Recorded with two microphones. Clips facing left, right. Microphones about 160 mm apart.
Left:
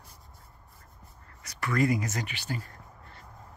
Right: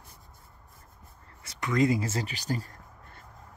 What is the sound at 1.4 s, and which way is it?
Speech, 20° right (ahead or behind).